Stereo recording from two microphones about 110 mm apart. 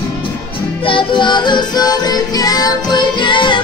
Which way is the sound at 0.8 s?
50° left (ahead or behind).